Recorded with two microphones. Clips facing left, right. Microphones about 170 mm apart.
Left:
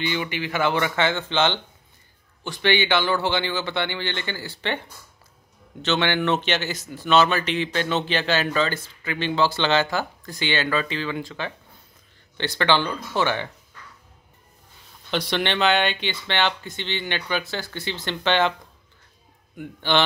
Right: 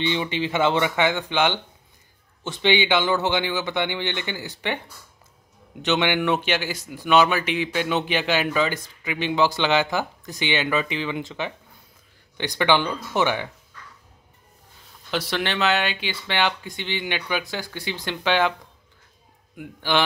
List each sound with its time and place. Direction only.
0.0 s speech: 25° right (ahead or behind)
5.8 s speech: 15° right (ahead or behind)
15.0 s speech: 5° right (ahead or behind)
19.5 s speech: 5° right (ahead or behind)